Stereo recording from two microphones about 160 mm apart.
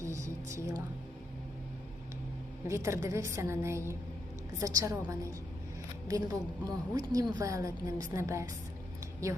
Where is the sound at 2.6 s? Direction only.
15° right (ahead or behind).